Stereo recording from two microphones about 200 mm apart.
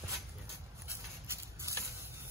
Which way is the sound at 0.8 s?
15° right (ahead or behind).